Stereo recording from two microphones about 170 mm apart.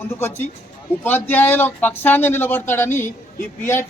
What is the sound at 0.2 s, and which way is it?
A man's voice, 10° left (ahead or behind).